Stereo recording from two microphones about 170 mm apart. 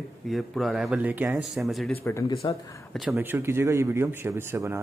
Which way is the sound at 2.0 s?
15° left (ahead or behind).